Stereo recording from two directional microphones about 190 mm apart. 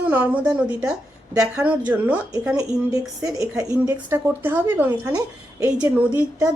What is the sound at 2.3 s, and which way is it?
A woman's voice, 20° right (ahead or behind).